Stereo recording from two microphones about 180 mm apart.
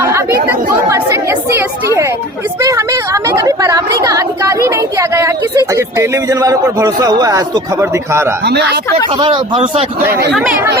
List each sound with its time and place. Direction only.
0.0 s chatter: 15° right (ahead or behind)
2.6 s a woman's voice: 20° right (ahead or behind)
8.4 s speech: 65° right (ahead or behind)
9.1 s a woman's voice: 30° right (ahead or behind)